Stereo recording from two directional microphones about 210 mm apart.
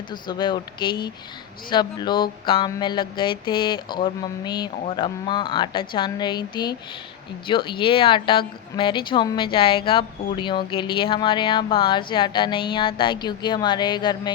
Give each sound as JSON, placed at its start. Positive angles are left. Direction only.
{"t": 0.1, "sound": "speech", "side_deg": 20}